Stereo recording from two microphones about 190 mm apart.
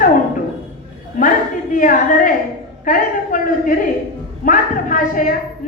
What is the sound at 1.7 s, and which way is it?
Speech, 45° left (ahead or behind).